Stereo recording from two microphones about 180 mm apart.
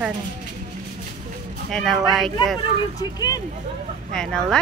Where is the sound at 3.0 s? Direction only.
20° left (ahead or behind).